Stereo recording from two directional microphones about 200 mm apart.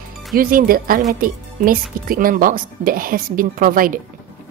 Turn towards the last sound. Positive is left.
turn(degrees=-45)  # may be behind; listen again after turning